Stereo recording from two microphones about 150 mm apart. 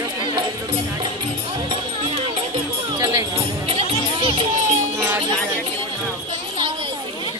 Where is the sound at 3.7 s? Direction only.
35° right (ahead or behind).